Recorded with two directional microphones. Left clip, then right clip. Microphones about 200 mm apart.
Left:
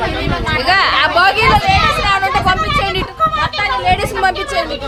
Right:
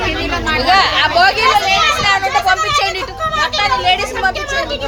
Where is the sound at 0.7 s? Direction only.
45° left (ahead or behind).